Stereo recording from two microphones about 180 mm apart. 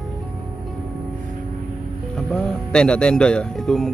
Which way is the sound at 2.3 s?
5° left (ahead or behind).